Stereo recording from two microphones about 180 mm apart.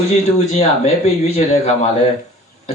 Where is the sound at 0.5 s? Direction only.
35° left (ahead or behind).